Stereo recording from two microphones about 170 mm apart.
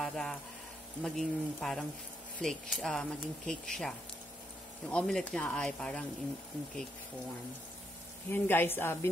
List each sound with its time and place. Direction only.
0.0 s speech: 5° left (ahead or behind)
8.3 s a woman's voice: 15° left (ahead or behind)